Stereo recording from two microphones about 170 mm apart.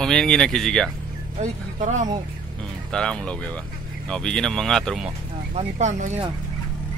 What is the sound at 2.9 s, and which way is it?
Speech, 5° left (ahead or behind).